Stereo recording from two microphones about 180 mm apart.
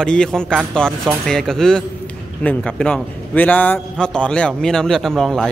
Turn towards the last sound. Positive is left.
turn(degrees=0)  # may be behind; listen again after turning